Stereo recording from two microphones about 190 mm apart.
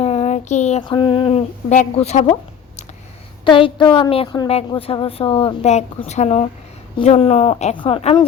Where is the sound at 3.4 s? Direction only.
25° left (ahead or behind).